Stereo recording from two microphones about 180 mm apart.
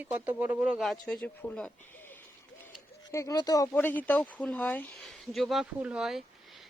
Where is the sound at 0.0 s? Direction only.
10° right (ahead or behind); by 1.7 s 5° left (ahead or behind).